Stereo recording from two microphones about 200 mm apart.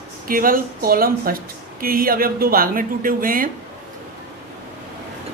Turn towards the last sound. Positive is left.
turn(degrees=-45)  # may be behind; listen again after turning